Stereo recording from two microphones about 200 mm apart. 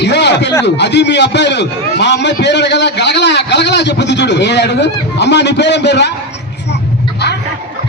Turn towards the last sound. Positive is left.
turn(degrees=60)  # may be behind; listen again after turning